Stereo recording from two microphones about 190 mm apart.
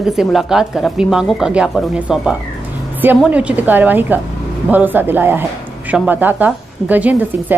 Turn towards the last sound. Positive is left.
turn(degrees=-10)  # may be behind; listen again after turning